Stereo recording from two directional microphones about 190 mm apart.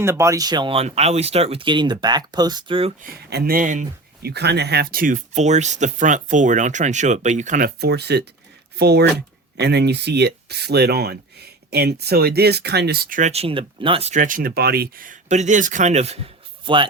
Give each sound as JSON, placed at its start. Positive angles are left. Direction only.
{"t": 0.0, "sound": "speech", "side_deg": -15}
{"t": 3.0, "sound": "speech", "side_deg": -55}
{"t": 7.8, "sound": "speech", "side_deg": -60}